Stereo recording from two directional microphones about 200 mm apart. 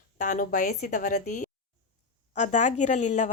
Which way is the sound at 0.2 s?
40° left (ahead or behind).